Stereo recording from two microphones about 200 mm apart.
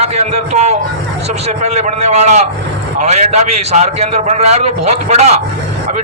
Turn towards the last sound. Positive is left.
turn(degrees=-35)  # may be behind; listen again after turning